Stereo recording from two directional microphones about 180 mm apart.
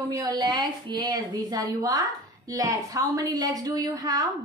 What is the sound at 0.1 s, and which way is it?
A woman's voice, 20° right (ahead or behind).